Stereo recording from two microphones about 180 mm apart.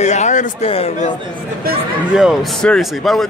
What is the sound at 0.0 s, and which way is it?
Speech, 40° left (ahead or behind).